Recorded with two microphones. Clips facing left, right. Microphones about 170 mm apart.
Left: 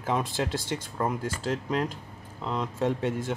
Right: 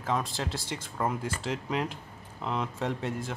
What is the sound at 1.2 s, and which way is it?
Speech, 45° left (ahead or behind).